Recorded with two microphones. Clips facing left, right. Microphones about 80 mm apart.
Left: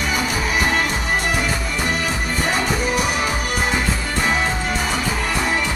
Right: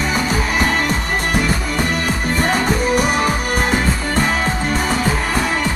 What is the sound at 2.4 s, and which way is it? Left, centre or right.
Music, right.